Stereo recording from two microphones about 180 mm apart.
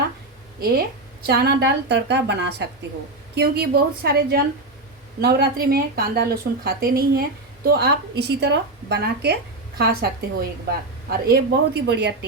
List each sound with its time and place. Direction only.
0.6 s a woman's voice: 60° right (ahead or behind)
3.3 s speech: 60° right (ahead or behind)
11.1 s speech: 60° right (ahead or behind)